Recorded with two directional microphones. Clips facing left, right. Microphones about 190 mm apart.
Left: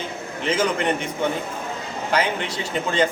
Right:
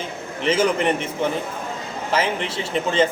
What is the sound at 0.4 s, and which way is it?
Speech, 30° right (ahead or behind).